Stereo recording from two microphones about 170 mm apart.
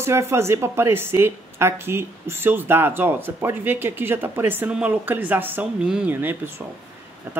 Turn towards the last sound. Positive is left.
turn(degrees=-15)  # may be behind; listen again after turning